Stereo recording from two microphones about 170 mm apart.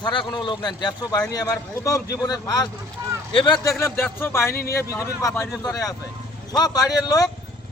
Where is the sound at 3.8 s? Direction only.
10° left (ahead or behind).